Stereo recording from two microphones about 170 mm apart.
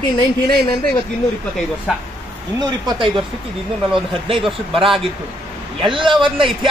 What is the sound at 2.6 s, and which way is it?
Speech, 25° right (ahead or behind).